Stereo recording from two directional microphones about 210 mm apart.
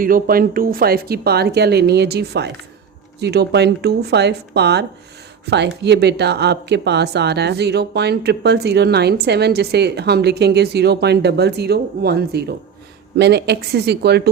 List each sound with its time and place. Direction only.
0.0 s speech: 45° right (ahead or behind)